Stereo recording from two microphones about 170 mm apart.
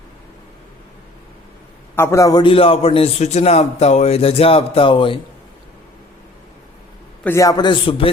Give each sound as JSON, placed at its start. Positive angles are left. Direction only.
{"t": 2.0, "sound": "a man's voice", "side_deg": 15}
{"t": 7.3, "sound": "a man's voice", "side_deg": 20}